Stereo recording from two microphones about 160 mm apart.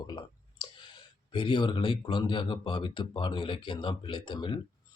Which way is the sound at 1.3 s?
30° left (ahead or behind).